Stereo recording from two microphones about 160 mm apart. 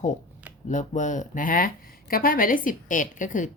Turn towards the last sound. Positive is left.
turn(degrees=55)  # may be behind; listen again after turning